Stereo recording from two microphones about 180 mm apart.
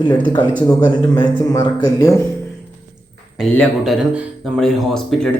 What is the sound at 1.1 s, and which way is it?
Speech, 15° left (ahead or behind).